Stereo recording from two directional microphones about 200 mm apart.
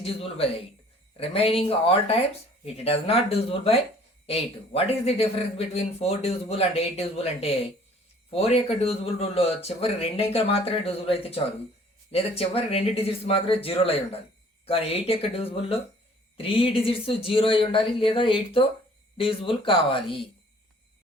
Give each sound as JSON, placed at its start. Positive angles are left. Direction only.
{"t": 0.0, "sound": "a man's voice", "side_deg": 30}